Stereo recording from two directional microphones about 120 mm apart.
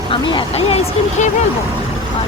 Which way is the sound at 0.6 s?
55° left (ahead or behind).